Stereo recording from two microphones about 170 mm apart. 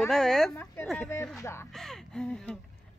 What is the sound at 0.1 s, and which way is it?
Speech, 5° left (ahead or behind).